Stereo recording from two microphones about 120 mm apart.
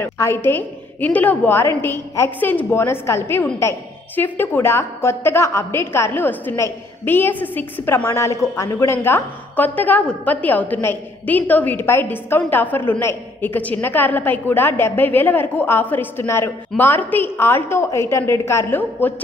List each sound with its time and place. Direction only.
0.0 s a woman's voice: 20° left (ahead or behind)